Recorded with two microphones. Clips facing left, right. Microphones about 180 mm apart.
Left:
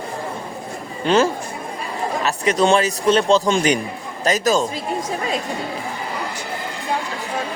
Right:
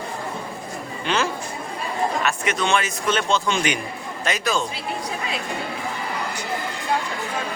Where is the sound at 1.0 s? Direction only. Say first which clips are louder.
Left 8 dB; 40° left (ahead or behind).